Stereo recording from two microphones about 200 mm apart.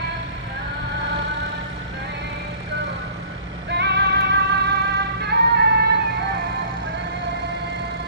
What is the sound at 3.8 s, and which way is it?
Synthetic singing, 55° right (ahead or behind).